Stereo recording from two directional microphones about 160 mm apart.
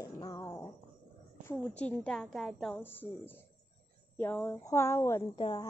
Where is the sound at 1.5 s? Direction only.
10° left (ahead or behind).